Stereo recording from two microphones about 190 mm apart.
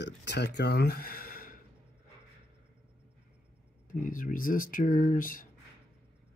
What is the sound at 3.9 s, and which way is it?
Speech, 45° left (ahead or behind).